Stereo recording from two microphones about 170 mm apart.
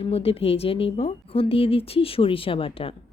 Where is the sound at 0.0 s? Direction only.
35° left (ahead or behind).